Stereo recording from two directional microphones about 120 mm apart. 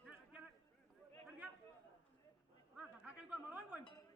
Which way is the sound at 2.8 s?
10° right (ahead or behind).